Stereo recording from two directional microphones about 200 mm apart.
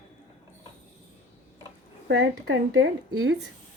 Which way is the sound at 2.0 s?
80° right.